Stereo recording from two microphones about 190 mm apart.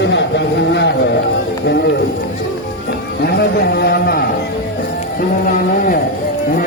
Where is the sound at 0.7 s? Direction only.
65° left (ahead or behind).